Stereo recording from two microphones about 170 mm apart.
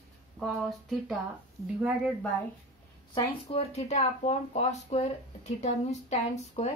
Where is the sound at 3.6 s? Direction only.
40° left (ahead or behind).